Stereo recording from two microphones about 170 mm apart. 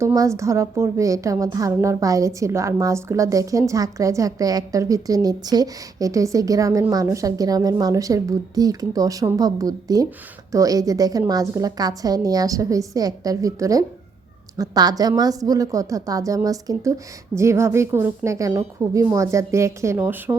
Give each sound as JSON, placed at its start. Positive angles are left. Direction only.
{"t": 0.0, "sound": "a woman's voice", "side_deg": -20}